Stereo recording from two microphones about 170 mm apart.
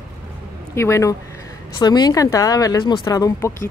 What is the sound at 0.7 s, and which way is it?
Speech, 15° left (ahead or behind).